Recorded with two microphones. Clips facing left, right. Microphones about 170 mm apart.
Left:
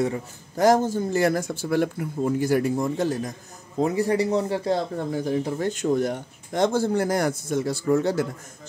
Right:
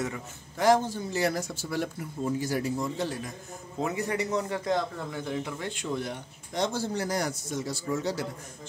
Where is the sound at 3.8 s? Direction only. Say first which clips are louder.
Left 8 dB; 35° left (ahead or behind); by 8.2 s 55° left (ahead or behind).